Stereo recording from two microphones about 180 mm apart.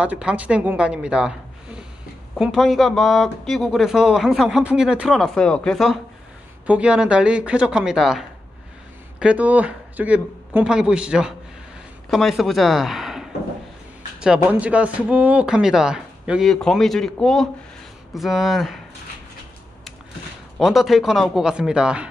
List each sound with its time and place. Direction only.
0.0 s speech: 5° right (ahead or behind)
20.5 s speech: centre (ahead or behind)